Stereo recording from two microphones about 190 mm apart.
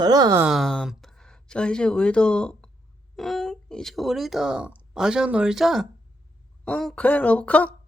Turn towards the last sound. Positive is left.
turn(degrees=5)  # may be behind; listen again after turning